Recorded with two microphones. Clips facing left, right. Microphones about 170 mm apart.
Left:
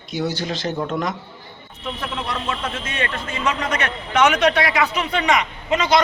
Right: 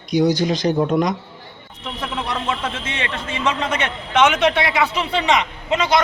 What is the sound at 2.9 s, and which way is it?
A man's voice, 20° right (ahead or behind).